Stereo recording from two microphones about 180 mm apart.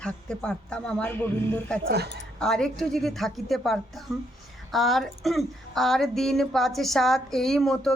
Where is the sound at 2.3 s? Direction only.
5° left (ahead or behind).